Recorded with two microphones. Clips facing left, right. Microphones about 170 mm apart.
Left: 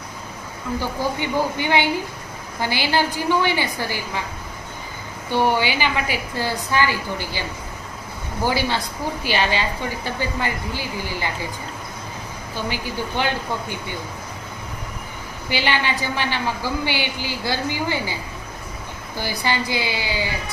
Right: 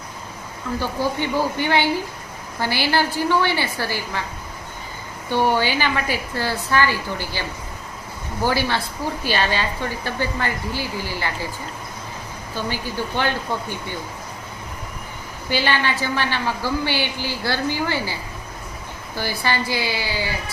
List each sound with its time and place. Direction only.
0.8 s a woman's voice: 15° left (ahead or behind)
5.3 s a woman's voice: 15° left (ahead or behind)
8.4 s a woman's voice: 15° left (ahead or behind)
12.6 s a woman's voice: 15° left (ahead or behind)
15.4 s a woman's voice: 15° left (ahead or behind)